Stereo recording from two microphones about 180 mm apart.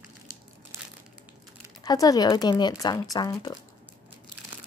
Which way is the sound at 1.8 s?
20° left (ahead or behind).